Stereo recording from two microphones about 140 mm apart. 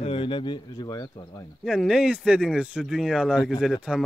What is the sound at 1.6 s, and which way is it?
Speech, 5° right (ahead or behind).